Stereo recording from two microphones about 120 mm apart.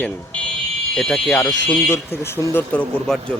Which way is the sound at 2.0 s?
20° left (ahead or behind).